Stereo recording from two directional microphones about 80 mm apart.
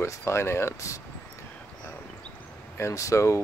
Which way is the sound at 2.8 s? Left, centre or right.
Left.